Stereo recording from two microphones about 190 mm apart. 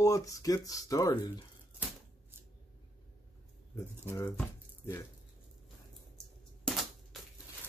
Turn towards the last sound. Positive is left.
turn(degrees=0)  # may be behind; listen again after turning